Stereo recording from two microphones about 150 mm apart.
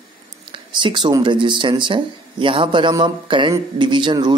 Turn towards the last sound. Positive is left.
turn(degrees=-30)  # may be behind; listen again after turning